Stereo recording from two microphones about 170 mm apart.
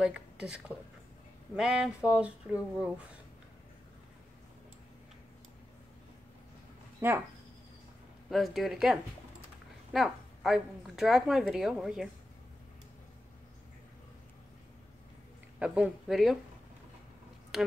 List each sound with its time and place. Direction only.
0.0 s speech: 5° right (ahead or behind)
7.0 s speech: 15° right (ahead or behind)
8.3 s a woman's voice: centre (ahead or behind)
15.6 s a woman's voice: 5° right (ahead or behind)
17.5 s speech: centre (ahead or behind)